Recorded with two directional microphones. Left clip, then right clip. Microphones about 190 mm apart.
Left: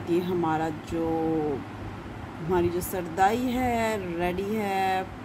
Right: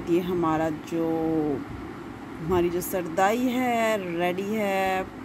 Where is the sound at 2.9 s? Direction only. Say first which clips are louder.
Right 1 dB; 20° right (ahead or behind).